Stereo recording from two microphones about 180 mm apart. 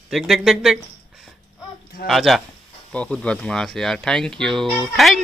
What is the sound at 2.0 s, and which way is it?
Speech, centre (ahead or behind).